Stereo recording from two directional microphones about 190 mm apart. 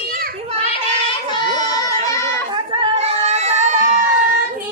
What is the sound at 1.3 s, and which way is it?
Child singing, 20° left (ahead or behind).